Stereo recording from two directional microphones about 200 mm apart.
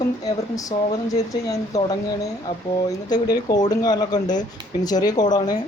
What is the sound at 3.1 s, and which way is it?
Speech, 20° left (ahead or behind).